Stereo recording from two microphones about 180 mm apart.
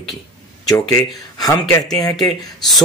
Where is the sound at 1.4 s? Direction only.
20° left (ahead or behind).